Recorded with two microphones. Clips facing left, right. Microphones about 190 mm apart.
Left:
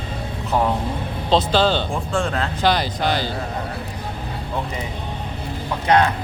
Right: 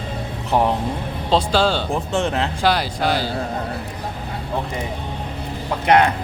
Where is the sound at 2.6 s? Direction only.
10° right (ahead or behind).